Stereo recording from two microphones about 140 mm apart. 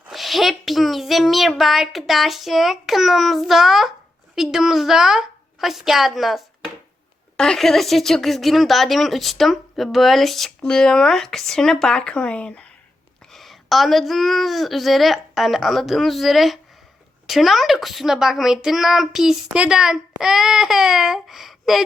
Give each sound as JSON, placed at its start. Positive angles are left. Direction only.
{"t": 0.1, "sound": "speech", "side_deg": 0}